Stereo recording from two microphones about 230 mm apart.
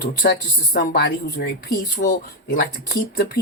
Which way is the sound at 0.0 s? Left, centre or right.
Left.